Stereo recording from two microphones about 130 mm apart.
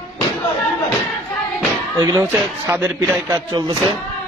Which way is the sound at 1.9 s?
25° right (ahead or behind).